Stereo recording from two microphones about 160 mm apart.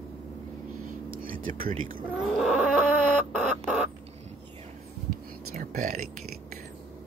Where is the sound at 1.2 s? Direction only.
60° right (ahead or behind).